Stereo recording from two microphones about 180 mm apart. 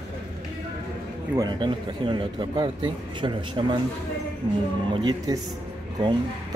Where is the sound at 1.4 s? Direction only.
25° right (ahead or behind).